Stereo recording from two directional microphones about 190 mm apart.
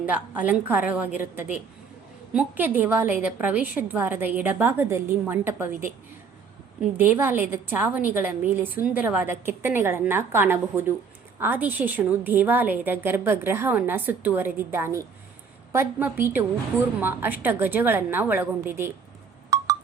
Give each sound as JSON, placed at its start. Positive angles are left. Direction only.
{"t": 0.0, "sound": "a woman's voice", "side_deg": -10}